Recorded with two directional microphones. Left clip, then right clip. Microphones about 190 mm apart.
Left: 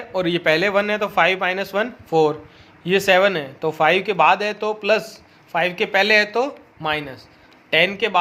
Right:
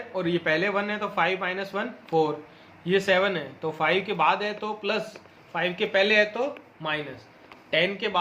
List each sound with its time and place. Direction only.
0.1 s a man's voice: 50° left (ahead or behind)